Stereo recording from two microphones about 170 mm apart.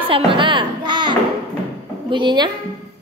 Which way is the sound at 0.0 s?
30° right (ahead or behind).